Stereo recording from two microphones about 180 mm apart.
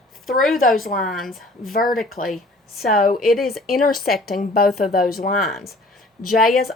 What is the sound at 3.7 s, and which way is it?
Speech, 55° left (ahead or behind).